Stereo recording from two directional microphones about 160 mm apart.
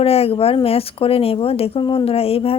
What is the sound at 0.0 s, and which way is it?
Speech, 40° left (ahead or behind).